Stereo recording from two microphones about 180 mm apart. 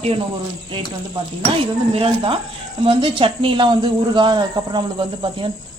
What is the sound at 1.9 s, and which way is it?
Speech, 30° right (ahead or behind).